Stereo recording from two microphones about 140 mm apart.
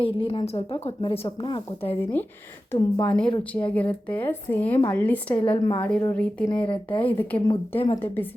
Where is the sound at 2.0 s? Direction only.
15° left (ahead or behind).